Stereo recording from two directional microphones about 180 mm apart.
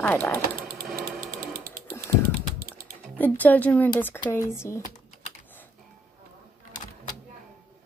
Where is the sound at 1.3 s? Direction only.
55° right (ahead or behind).